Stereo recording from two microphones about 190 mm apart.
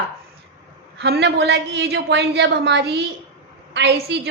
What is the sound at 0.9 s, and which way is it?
A woman's voice, 60° right (ahead or behind).